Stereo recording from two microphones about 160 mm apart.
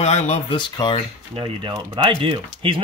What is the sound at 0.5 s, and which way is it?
Speech, 30° left (ahead or behind).